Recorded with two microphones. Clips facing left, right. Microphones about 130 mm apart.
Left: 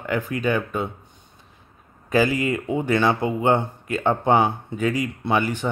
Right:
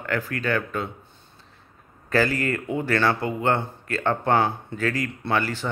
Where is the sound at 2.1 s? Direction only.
15° left (ahead or behind).